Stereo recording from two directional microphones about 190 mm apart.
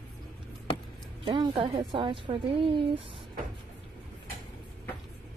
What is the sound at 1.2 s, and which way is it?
Speech, 25° right (ahead or behind).